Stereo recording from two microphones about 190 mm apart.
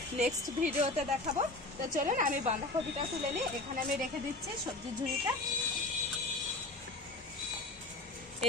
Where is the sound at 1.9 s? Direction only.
45° right (ahead or behind).